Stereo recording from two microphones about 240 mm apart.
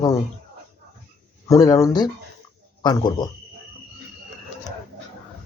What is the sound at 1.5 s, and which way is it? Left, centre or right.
Speech, centre.